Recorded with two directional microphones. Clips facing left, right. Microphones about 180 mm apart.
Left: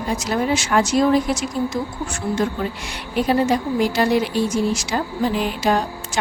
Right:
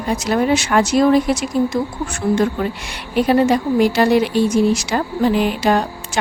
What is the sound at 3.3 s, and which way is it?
A woman's voice, 65° right (ahead or behind).